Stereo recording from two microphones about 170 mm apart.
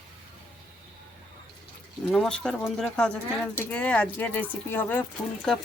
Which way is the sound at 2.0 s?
5° left (ahead or behind).